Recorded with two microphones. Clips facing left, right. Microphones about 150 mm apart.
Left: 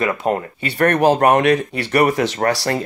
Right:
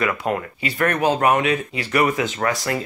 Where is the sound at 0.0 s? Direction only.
35° left (ahead or behind).